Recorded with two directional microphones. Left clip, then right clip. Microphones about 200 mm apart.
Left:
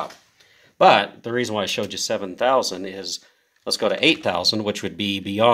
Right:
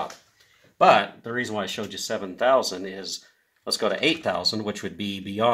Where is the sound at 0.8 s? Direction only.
35° left (ahead or behind).